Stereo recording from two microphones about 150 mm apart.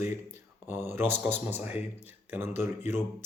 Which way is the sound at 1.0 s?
15° right (ahead or behind).